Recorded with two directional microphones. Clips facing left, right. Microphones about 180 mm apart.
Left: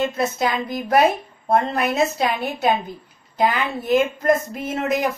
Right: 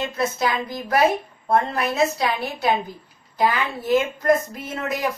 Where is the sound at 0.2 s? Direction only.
20° left (ahead or behind).